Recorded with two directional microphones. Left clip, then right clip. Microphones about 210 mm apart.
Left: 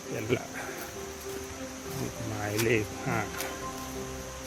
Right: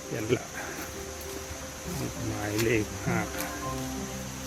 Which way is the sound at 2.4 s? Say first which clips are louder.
Even; 10° left (ahead or behind).